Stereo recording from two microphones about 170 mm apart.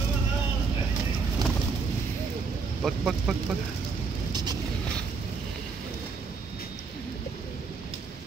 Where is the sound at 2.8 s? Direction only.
Centre (ahead or behind).